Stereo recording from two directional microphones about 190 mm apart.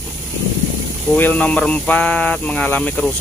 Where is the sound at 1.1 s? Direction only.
10° left (ahead or behind).